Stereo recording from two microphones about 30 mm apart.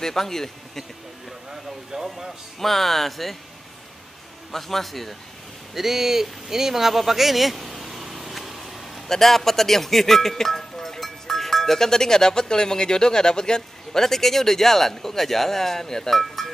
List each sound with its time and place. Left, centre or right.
0.0 s speech: centre
1.5 s a sound: right
2.0 s a man's voice: centre
2.6 s speech: centre
4.5 s speech: centre
5.8 s a sound: centre
9.1 s speech: centre